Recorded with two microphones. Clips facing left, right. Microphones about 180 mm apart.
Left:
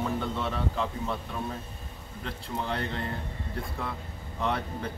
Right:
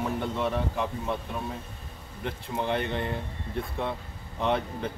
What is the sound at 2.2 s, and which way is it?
Speech, 20° right (ahead or behind).